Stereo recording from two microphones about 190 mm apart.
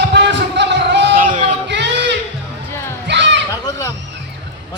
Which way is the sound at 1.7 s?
65° right (ahead or behind).